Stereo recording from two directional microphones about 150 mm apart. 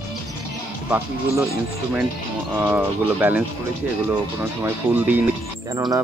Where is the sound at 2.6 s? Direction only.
10° right (ahead or behind).